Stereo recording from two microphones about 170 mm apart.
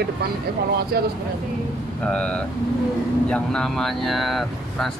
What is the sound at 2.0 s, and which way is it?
Speech, 5° left (ahead or behind).